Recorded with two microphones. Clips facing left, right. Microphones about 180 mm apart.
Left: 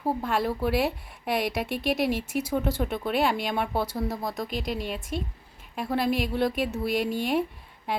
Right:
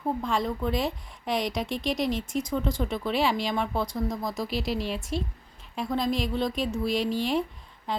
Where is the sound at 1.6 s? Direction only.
60° left (ahead or behind).